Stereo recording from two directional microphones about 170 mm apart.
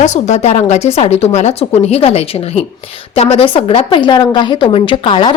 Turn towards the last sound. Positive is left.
turn(degrees=30)  # may be behind; listen again after turning